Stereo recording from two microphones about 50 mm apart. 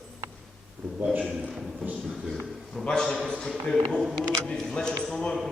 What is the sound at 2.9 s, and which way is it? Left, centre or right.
A man's voice, centre.